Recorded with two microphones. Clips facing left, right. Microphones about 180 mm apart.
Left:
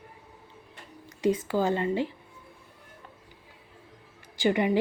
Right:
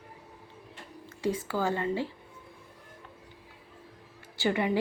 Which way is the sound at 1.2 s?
20° left (ahead or behind).